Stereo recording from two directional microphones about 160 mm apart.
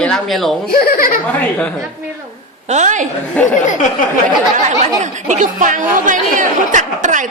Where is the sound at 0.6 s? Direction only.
70° left (ahead or behind).